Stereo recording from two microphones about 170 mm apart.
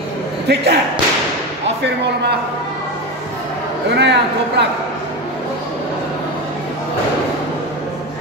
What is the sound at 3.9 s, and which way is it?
Speech, 85° right.